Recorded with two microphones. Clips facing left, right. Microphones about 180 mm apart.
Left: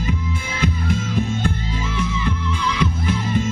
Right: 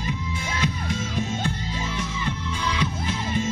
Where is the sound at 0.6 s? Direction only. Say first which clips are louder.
Left 7 dB; 55° left (ahead or behind).